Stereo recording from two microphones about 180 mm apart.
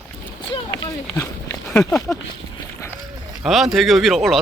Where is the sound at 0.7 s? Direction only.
15° left (ahead or behind).